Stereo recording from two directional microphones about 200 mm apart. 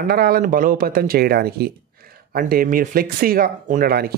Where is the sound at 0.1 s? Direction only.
50° right (ahead or behind).